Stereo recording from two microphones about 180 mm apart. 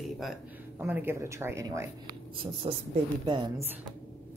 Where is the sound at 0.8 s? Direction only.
10° right (ahead or behind).